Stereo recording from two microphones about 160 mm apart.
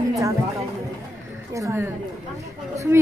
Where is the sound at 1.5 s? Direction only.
15° right (ahead or behind).